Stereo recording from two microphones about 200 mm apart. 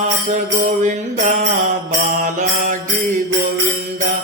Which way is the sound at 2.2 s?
40° right (ahead or behind).